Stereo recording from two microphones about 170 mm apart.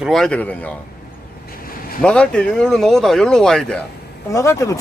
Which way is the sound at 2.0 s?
5° left (ahead or behind).